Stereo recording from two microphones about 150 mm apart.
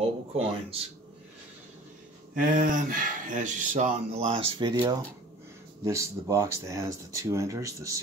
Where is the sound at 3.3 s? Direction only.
60° right (ahead or behind).